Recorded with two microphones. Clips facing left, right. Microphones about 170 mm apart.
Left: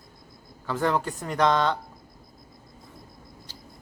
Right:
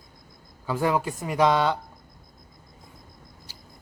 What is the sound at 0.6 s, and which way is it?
Speech, 10° right (ahead or behind).